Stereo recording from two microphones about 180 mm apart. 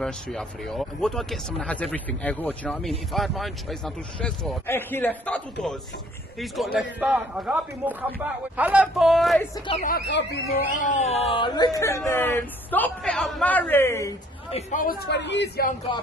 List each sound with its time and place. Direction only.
0.0 s speech: 5° left (ahead or behind)
4.6 s a man's voice: 10° left (ahead or behind)
9.8 s speech: 50° left (ahead or behind)
10.0 s speech: 70° left (ahead or behind)
10.5 s a man's voice: 50° left (ahead or behind); by 14.1 s 15° left (ahead or behind)
14.5 s speech: 45° left (ahead or behind)
15.0 s speech: 75° left (ahead or behind)